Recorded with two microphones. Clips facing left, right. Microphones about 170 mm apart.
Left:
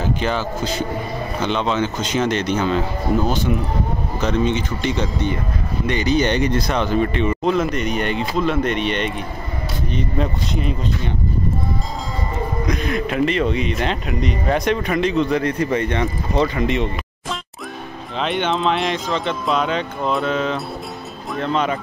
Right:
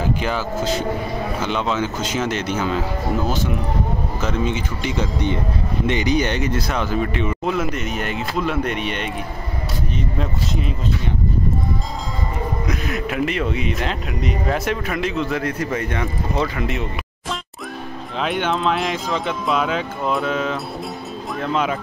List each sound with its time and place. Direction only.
0.0 s speech: 10° right (ahead or behind)
6.2 s speech: 5° right (ahead or behind)
12.6 s speech: 5° right (ahead or behind)
18.2 s speech: 5° right (ahead or behind)